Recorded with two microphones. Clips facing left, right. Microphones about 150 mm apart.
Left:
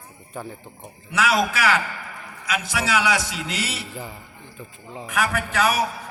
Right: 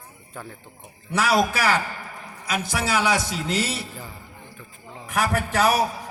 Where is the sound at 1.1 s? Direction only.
35° right (ahead or behind).